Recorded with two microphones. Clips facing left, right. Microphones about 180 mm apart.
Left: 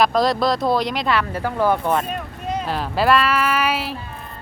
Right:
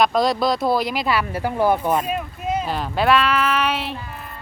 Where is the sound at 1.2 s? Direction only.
15° right (ahead or behind); by 3.9 s 5° left (ahead or behind).